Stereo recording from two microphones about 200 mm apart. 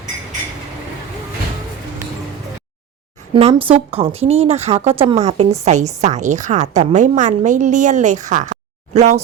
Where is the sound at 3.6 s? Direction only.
30° right (ahead or behind).